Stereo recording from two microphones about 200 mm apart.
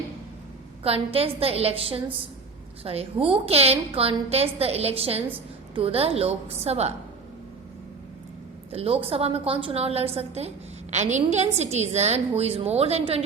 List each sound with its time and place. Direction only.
0.9 s a woman's voice: 30° right (ahead or behind)
8.7 s a woman's voice: 30° right (ahead or behind)